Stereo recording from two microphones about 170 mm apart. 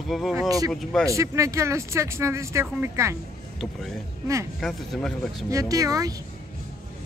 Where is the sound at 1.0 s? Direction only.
20° right (ahead or behind).